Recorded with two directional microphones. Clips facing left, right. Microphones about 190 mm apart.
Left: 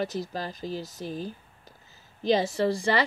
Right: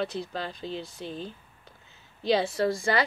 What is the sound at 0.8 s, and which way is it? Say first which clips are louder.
Speech: left 1 dB; 40° left (ahead or behind).